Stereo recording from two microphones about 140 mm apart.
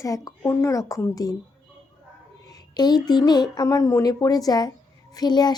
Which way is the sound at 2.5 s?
30° left (ahead or behind).